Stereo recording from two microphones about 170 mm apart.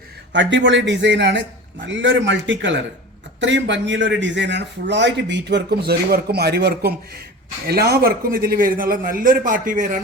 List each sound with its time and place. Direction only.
0.3 s a man's voice: 90° right; by 10.0 s 50° right (ahead or behind)